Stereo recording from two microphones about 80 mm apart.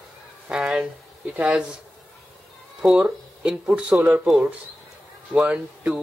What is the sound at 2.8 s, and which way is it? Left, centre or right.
Speech, centre.